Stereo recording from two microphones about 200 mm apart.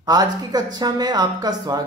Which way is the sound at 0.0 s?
20° right (ahead or behind).